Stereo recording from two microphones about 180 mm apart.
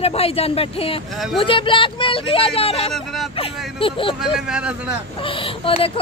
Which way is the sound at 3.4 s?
30° left (ahead or behind).